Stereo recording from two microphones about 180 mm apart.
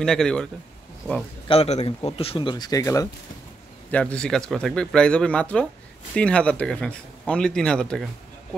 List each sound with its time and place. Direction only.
0.0 s speech: 5° left (ahead or behind)
1.5 s a man's voice: 35° left (ahead or behind); by 3.1 s 20° left (ahead or behind)
3.9 s speech: 5° left (ahead or behind)